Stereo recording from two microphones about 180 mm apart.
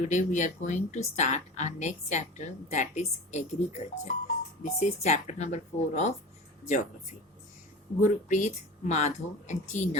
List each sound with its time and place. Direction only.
0.0 s speech: 45° left (ahead or behind)
8.0 s speech: 45° left (ahead or behind)